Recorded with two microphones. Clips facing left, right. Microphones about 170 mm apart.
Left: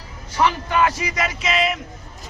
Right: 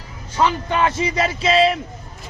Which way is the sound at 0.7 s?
25° right (ahead or behind).